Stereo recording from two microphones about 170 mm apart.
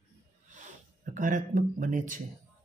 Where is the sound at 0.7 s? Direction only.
50° right (ahead or behind).